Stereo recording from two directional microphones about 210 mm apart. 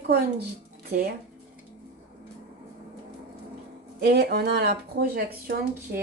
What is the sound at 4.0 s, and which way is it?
Speech, 50° right (ahead or behind).